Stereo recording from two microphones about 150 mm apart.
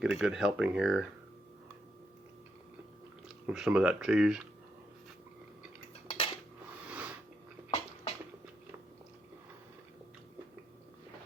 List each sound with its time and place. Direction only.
0.0 s speech: 5° right (ahead or behind)
3.2 s speech: 5° right (ahead or behind)
6.1 s cutlery: 40° left (ahead or behind)
6.7 s a sound: 10° right (ahead or behind)